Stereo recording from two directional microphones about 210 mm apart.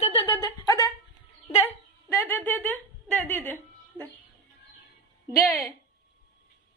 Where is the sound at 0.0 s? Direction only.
25° left (ahead or behind).